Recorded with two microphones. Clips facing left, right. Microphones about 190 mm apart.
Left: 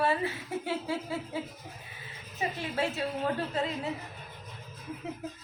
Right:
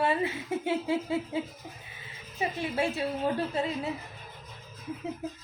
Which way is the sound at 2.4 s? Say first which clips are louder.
Right 2 dB; 15° right (ahead or behind).